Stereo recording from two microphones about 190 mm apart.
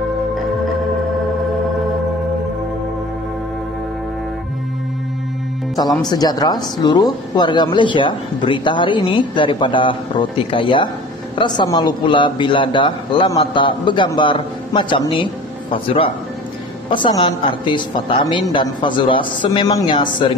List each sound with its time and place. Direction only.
6.0 s a man's voice: 20° left (ahead or behind)